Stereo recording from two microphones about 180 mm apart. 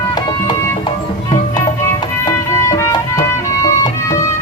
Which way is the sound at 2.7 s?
20° left (ahead or behind).